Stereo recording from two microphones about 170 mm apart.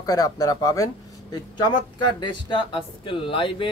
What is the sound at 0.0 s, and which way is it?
Speech, 20° left (ahead or behind).